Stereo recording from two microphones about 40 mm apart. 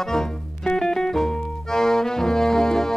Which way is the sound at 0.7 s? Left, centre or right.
Centre.